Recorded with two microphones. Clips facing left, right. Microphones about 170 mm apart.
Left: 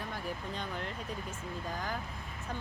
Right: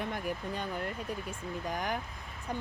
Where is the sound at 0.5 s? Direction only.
10° right (ahead or behind).